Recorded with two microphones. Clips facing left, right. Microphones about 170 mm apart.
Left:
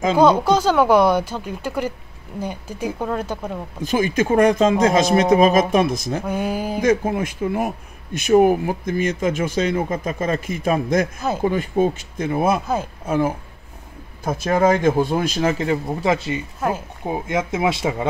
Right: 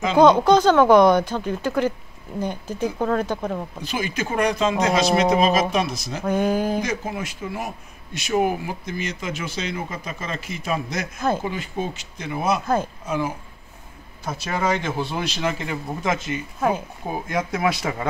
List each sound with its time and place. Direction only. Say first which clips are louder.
0.1 s speech: right 2 dB; 10° left (ahead or behind)
3.8 s speech: left 11 dB; 50° left (ahead or behind)
6.2 s speech: right 7 dB; 10° left (ahead or behind)
6.8 s speech: left 8 dB; 50° left (ahead or behind); by 17.9 s 25° left (ahead or behind)